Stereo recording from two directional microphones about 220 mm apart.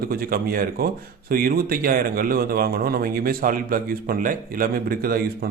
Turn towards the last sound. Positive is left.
turn(degrees=-40)  # may be behind; listen again after turning